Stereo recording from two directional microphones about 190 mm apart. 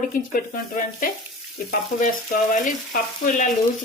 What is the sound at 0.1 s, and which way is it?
Frying, 45° left (ahead or behind).